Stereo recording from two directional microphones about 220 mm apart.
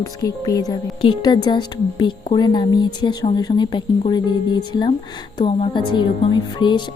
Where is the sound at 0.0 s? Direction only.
15° left (ahead or behind).